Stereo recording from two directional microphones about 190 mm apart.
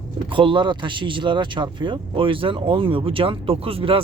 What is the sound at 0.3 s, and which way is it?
A man's voice, 25° right (ahead or behind).